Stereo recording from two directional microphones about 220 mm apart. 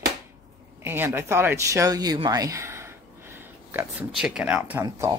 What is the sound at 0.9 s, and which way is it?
Speech, 10° right (ahead or behind).